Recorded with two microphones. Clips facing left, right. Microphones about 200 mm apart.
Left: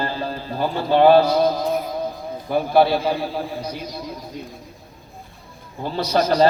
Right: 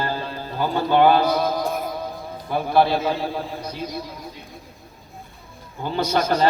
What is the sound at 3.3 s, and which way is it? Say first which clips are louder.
Speech: left 2 dB; 15° left (ahead or behind).